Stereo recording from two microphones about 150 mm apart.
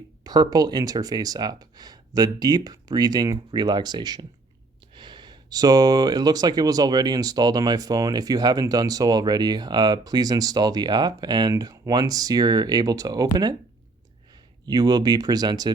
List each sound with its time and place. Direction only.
0.3 s speech: 25° right (ahead or behind)
14.7 s speech: 25° right (ahead or behind)